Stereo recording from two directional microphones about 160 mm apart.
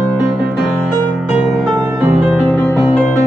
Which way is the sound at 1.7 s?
15° right (ahead or behind).